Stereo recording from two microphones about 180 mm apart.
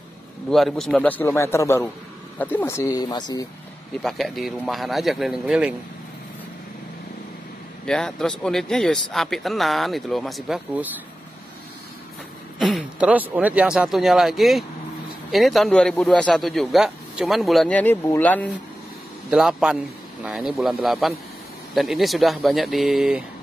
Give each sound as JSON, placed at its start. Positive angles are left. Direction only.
{"t": 0.5, "sound": "a man's voice", "side_deg": 0}
{"t": 4.0, "sound": "a man's voice", "side_deg": 0}
{"t": 7.8, "sound": "a man's voice", "side_deg": 5}
{"t": 12.5, "sound": "a man's voice", "side_deg": 0}
{"t": 19.3, "sound": "a man's voice", "side_deg": -5}